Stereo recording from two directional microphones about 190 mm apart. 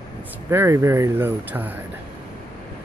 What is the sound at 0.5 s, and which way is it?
Speech, 15° right (ahead or behind).